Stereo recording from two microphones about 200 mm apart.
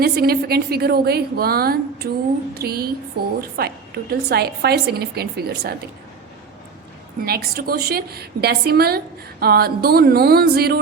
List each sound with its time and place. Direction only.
0.0 s a woman's voice: 50° right (ahead or behind)
7.2 s a woman's voice: 50° right (ahead or behind)